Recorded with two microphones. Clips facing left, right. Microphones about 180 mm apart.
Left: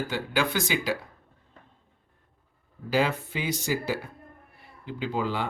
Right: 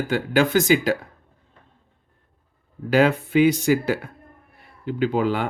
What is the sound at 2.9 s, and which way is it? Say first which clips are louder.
Speech: right 9 dB; 60° right (ahead or behind).